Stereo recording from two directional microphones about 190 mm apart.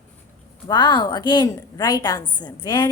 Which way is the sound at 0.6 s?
25° left (ahead or behind).